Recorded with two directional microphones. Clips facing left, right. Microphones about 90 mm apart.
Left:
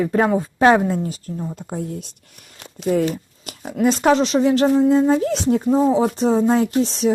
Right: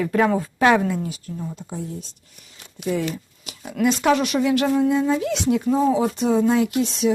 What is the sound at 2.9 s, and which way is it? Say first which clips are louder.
Speech: left 5 dB; 45° left (ahead or behind).